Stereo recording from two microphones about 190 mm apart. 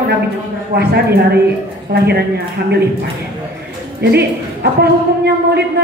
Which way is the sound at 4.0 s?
60° right (ahead or behind).